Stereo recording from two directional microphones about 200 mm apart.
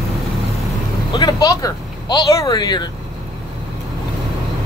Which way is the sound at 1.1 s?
20° left (ahead or behind).